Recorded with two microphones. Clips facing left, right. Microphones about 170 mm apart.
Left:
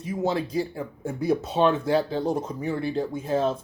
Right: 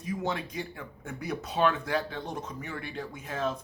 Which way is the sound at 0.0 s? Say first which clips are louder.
Left 6 dB; 25° left (ahead or behind).